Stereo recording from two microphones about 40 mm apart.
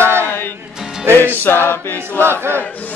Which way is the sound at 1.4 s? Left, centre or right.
Left.